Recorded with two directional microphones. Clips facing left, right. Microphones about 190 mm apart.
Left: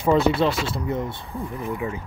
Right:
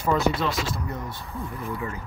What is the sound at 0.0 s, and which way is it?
Speech, 25° left (ahead or behind).